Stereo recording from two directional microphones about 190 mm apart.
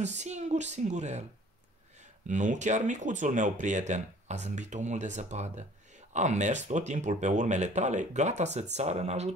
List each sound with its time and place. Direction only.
0.0 s speech: 35° right (ahead or behind)
2.2 s speech: 40° right (ahead or behind)